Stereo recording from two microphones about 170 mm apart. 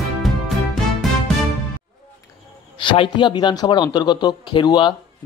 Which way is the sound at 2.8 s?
30° left (ahead or behind).